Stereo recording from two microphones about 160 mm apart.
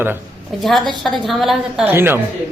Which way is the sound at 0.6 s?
Centre (ahead or behind).